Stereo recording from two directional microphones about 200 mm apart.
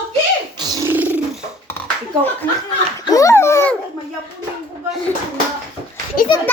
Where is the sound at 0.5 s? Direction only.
20° right (ahead or behind).